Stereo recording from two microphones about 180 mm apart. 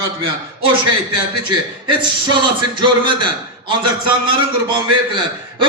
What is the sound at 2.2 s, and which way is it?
Speech, 25° right (ahead or behind).